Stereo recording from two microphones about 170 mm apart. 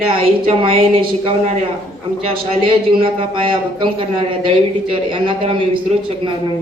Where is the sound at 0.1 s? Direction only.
35° right (ahead or behind).